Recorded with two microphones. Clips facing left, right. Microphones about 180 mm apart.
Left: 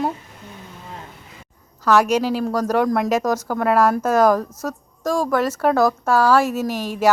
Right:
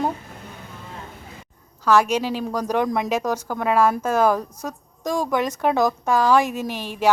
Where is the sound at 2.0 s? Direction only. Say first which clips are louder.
Left 4 dB; 5° left (ahead or behind).